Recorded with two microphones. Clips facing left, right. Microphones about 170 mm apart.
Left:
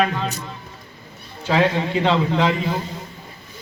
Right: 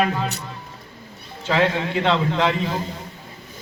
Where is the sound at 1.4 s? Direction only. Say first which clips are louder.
Left 1 dB; 15° left (ahead or behind).